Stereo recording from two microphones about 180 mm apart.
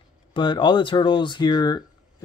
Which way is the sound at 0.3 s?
25° left (ahead or behind).